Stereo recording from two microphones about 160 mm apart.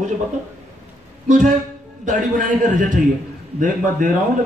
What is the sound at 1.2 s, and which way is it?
A man's voice, 50° right (ahead or behind).